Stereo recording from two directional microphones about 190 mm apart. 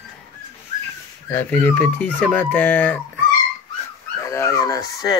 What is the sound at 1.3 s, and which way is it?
Speech, 10° left (ahead or behind).